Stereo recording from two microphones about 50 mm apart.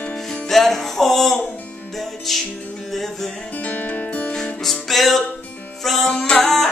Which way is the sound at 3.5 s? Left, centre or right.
Left.